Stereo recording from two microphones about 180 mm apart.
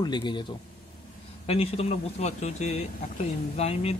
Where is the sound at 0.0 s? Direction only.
25° left (ahead or behind).